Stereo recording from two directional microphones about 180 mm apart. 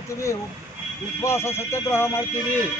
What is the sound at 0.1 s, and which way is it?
Speech, 15° left (ahead or behind).